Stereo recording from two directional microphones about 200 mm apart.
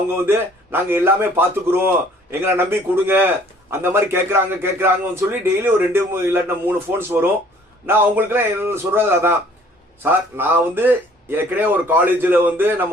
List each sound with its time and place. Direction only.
0.3 s a man's voice: 10° right (ahead or behind)